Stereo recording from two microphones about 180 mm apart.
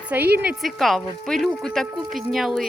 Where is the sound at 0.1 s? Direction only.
10° right (ahead or behind).